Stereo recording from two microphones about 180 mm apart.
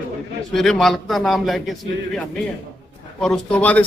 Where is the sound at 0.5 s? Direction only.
Centre (ahead or behind).